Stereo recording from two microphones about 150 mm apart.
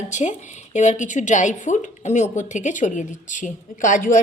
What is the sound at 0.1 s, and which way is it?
A woman's voice, 55° left (ahead or behind).